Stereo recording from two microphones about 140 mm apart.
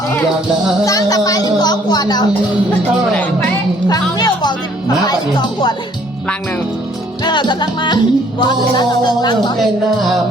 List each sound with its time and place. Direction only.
0.9 s speech: 25° left (ahead or behind)
3.1 s speech: 10° left (ahead or behind)
5.0 s music: 30° left (ahead or behind)
7.3 s music: 30° left (ahead or behind)